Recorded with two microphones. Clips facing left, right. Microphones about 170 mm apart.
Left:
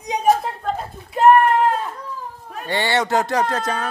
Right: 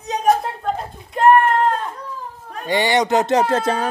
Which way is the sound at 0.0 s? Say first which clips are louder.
Even; 10° left (ahead or behind).